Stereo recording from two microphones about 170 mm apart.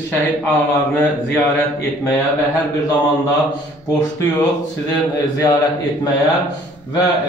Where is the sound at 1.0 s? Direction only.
15° left (ahead or behind).